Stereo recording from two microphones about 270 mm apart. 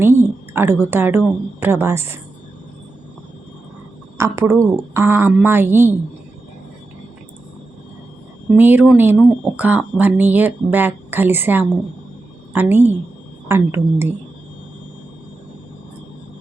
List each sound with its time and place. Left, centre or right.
0.0 s a woman's voice: centre
4.2 s speech: centre
8.5 s speech: centre